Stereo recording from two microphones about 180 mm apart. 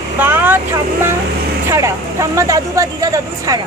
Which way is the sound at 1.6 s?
15° right (ahead or behind).